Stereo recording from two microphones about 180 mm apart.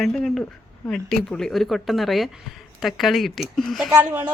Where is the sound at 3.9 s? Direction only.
15° right (ahead or behind).